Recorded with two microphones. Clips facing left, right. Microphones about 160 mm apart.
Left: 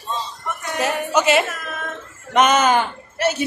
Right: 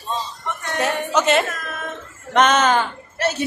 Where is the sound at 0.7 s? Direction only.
5° left (ahead or behind).